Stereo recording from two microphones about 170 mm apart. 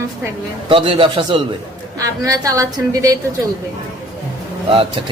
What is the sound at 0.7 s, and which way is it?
Speech, 30° right (ahead or behind).